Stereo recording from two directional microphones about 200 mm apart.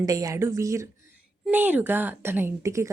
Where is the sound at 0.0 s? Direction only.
20° right (ahead or behind).